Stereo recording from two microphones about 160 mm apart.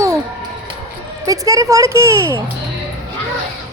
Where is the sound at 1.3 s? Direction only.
20° right (ahead or behind).